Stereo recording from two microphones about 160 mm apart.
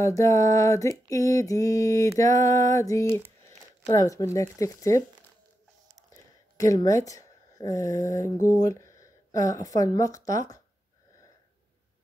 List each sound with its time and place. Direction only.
0.0 s mantra: 20° left (ahead or behind)
3.4 s speech: 20° left (ahead or behind)
6.1 s a sound: 20° left (ahead or behind)
8.5 s speech: 20° left (ahead or behind)